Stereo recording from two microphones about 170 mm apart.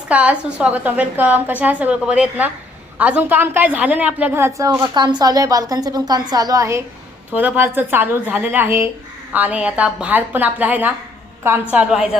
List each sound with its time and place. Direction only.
0.1 s a woman's voice: 5° right (ahead or behind)